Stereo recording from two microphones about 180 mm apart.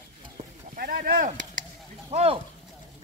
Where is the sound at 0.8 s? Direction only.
50° right (ahead or behind).